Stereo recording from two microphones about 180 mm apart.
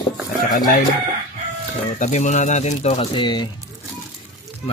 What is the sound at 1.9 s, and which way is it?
Speech, 40° left (ahead or behind).